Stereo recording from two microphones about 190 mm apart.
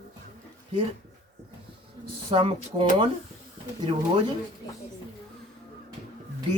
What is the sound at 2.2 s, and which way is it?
Speech, 30° right (ahead or behind).